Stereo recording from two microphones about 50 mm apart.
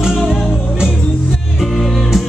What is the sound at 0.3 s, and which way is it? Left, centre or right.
Music, centre.